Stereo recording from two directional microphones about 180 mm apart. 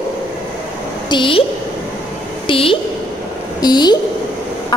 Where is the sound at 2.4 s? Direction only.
30° left (ahead or behind).